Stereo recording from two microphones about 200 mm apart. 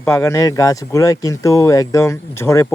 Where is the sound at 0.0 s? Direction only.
15° left (ahead or behind).